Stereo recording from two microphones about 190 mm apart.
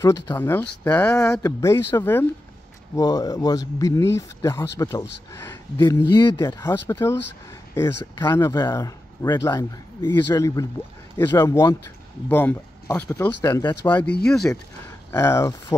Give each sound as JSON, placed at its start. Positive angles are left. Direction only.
{"t": 0.0, "sound": "speech", "side_deg": 15}
{"t": 15.0, "sound": "speech", "side_deg": 15}